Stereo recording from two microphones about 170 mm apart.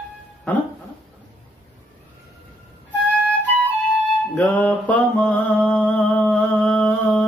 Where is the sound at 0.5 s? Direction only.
10° left (ahead or behind).